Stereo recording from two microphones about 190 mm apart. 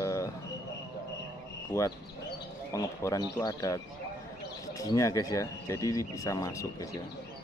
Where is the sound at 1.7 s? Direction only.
15° left (ahead or behind).